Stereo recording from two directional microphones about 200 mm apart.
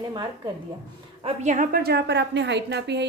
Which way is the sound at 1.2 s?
35° right (ahead or behind).